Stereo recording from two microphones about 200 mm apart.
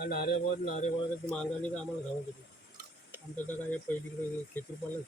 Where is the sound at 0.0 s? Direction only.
50° left (ahead or behind).